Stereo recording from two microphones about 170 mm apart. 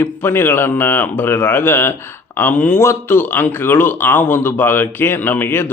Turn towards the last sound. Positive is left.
turn(degrees=15)  # may be behind; listen again after turning